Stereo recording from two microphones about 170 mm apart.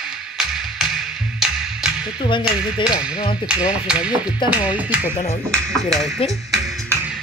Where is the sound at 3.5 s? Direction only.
5° right (ahead or behind).